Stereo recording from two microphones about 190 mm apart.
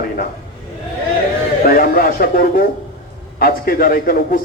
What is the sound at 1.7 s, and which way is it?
A man's voice, 50° left (ahead or behind).